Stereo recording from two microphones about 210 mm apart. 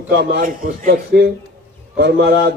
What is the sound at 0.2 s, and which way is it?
A man's voice, 50° right (ahead or behind).